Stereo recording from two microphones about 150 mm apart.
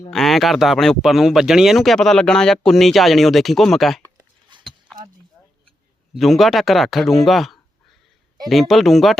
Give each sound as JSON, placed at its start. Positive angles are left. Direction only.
{"t": 0.1, "sound": "speech", "side_deg": 0}
{"t": 4.5, "sound": "a sound", "side_deg": -30}
{"t": 6.1, "sound": "speech", "side_deg": 0}